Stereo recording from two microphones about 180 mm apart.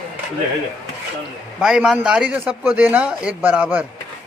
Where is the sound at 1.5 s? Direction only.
5° right (ahead or behind).